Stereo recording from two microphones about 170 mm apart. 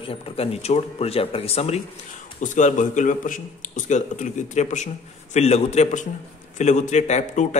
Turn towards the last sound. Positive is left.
turn(degrees=45)  # may be behind; listen again after turning